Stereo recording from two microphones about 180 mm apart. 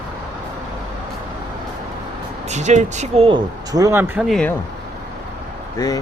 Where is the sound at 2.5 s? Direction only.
40° right (ahead or behind).